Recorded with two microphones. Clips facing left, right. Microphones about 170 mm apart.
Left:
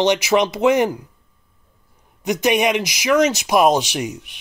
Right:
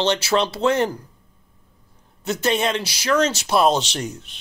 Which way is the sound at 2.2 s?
15° left (ahead or behind).